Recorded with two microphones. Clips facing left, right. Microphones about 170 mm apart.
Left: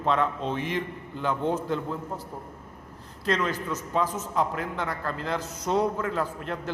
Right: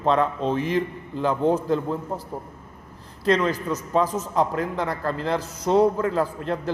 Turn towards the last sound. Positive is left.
turn(degrees=-35)  # may be behind; listen again after turning